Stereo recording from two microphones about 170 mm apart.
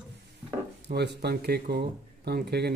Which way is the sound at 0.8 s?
75° right (ahead or behind).